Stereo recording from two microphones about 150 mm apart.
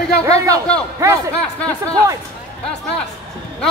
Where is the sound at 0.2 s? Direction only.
20° right (ahead or behind).